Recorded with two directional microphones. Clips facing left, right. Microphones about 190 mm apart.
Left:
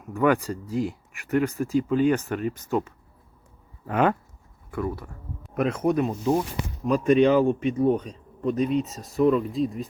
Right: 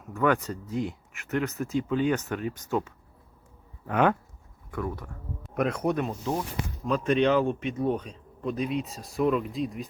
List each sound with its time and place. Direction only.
0.1 s speech: 10° left (ahead or behind)
8.6 s speech: 40° left (ahead or behind)
8.9 s speech: centre (ahead or behind)